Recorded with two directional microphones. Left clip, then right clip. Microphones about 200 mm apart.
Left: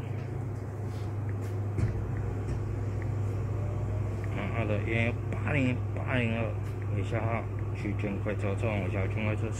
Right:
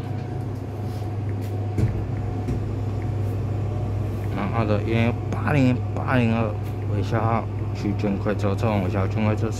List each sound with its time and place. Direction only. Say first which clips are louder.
4.4 s speech: right 9 dB; 15° right (ahead or behind)